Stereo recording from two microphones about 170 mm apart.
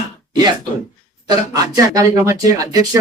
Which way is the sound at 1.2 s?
20° right (ahead or behind).